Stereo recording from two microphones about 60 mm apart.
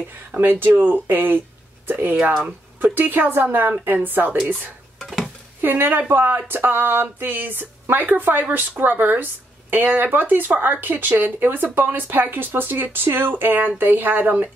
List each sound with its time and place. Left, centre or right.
0.4 s speech: right
5.0 s a sound: centre
5.6 s speech: right